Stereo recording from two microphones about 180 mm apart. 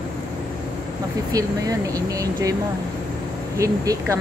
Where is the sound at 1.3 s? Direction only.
20° right (ahead or behind).